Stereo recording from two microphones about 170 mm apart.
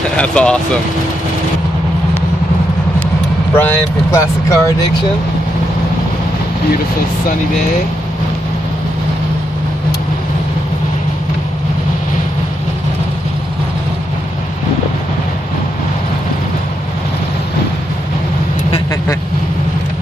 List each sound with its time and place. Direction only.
0.2 s speech: 5° left (ahead or behind)
3.5 s speech: 15° left (ahead or behind)